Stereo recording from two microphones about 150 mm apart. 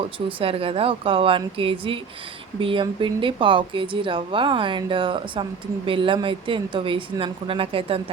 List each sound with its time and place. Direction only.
0.3 s speech: 35° right (ahead or behind)